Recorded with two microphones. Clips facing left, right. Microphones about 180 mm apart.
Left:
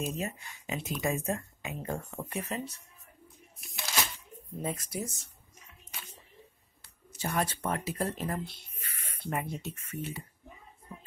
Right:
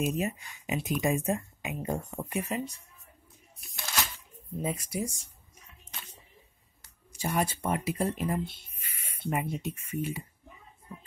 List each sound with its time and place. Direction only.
0.0 s speech: 15° right (ahead or behind)
3.5 s a sound: centre (ahead or behind)
4.6 s speech: 10° right (ahead or behind)
7.1 s speech: 10° right (ahead or behind)
8.7 s a sound: 10° right (ahead or behind)
9.3 s speech: 10° right (ahead or behind)